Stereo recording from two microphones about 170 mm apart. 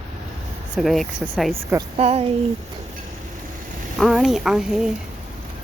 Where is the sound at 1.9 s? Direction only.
35° right (ahead or behind).